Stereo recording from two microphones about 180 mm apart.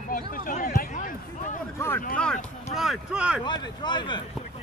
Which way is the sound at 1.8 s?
10° left (ahead or behind).